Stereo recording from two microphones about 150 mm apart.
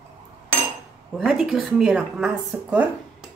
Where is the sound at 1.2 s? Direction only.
5° right (ahead or behind).